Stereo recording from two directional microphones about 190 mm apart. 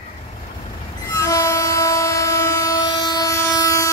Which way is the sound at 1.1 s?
15° left (ahead or behind).